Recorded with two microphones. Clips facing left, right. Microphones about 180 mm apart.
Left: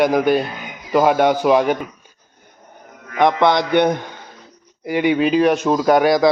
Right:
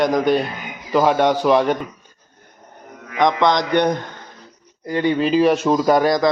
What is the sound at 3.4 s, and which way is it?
A man's voice, 5° left (ahead or behind).